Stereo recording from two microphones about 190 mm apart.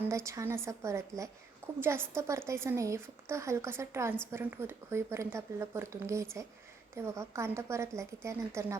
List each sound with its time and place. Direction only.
0.0 s speech: 15° right (ahead or behind)